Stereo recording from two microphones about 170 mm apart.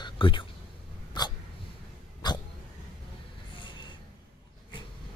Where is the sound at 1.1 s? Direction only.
25° left (ahead or behind).